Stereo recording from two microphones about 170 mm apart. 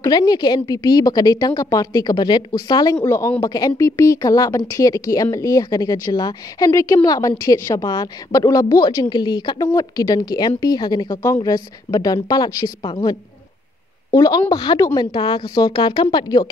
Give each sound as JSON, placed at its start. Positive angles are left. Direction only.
{"t": 0.0, "sound": "a woman's voice", "side_deg": 25}